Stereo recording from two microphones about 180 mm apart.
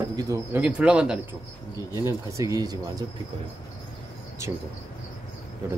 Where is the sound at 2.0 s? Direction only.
20° right (ahead or behind).